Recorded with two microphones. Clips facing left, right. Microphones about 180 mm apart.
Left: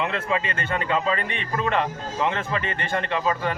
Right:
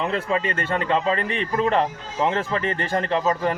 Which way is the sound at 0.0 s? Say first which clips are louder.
Right 2 dB; 35° right (ahead or behind).